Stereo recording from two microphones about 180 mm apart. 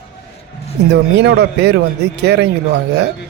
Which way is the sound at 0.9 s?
65° right (ahead or behind).